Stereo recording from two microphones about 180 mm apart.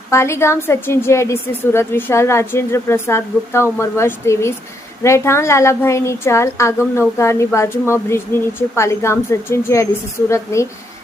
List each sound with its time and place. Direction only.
0.1 s a woman's voice: 15° left (ahead or behind)